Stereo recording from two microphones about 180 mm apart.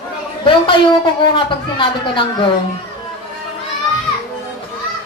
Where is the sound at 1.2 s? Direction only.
25° left (ahead or behind).